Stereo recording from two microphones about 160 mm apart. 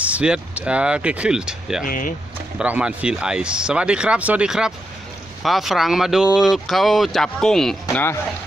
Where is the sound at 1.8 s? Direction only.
55° left (ahead or behind).